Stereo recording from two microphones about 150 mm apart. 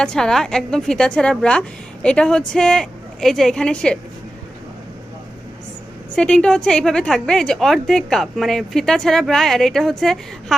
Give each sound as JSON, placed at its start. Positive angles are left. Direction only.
{"t": 0.0, "sound": "a woman's voice", "side_deg": 5}
{"t": 6.1, "sound": "a woman's voice", "side_deg": 5}